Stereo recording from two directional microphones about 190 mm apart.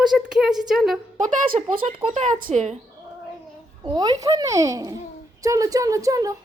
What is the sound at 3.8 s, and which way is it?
A child's voice, 20° right (ahead or behind).